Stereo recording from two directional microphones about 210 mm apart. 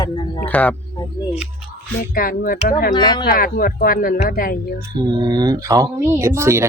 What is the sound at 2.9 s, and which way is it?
Speech, 20° left (ahead or behind).